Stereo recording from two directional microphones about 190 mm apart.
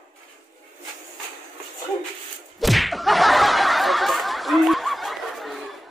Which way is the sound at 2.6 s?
Centre (ahead or behind).